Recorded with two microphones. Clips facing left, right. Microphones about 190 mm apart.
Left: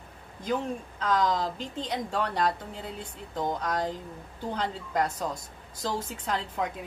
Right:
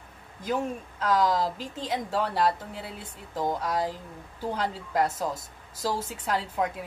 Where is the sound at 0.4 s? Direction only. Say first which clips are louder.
Right 1 dB; 5° right (ahead or behind).